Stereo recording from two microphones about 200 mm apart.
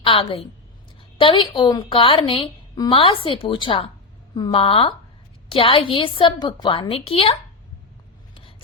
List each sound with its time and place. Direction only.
0.0 s a woman's voice: 25° left (ahead or behind)